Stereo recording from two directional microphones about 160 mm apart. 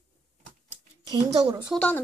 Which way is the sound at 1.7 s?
10° left (ahead or behind).